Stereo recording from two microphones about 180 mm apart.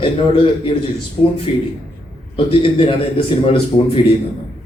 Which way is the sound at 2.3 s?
30° left (ahead or behind).